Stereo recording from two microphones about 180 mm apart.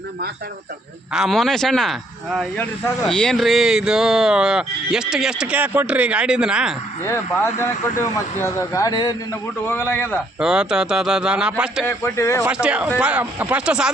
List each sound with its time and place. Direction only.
1.1 s speech: centre (ahead or behind)
8.7 s a man's voice: 20° left (ahead or behind)
9.6 s speech: 10° left (ahead or behind)
10.2 s speech: 5° right (ahead or behind)
11.9 s speech: 15° left (ahead or behind)
12.6 s speech: 5° right (ahead or behind)